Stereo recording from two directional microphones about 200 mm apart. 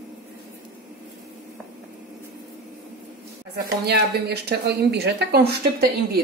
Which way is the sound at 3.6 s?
55° right (ahead or behind).